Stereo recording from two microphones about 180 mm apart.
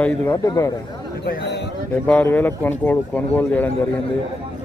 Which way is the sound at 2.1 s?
10° left (ahead or behind).